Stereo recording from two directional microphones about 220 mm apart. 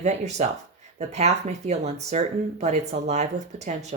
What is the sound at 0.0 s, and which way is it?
Speech, 30° right (ahead or behind).